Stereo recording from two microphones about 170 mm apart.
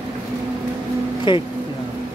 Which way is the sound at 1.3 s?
25° left (ahead or behind).